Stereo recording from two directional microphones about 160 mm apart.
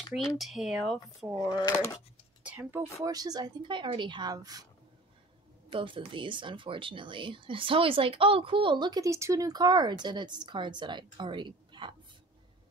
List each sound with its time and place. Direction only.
0.1 s speech: centre (ahead or behind)
1.3 s speech: 20° left (ahead or behind)
2.4 s speech: 10° right (ahead or behind)
5.7 s speech: 30° right (ahead or behind)